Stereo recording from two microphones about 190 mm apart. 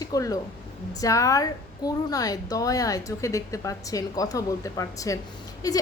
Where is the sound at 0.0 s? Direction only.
20° left (ahead or behind).